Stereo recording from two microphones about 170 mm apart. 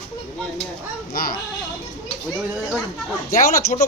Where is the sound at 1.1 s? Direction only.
60° left (ahead or behind).